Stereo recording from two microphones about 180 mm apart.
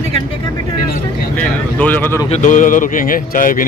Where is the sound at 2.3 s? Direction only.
45° left (ahead or behind).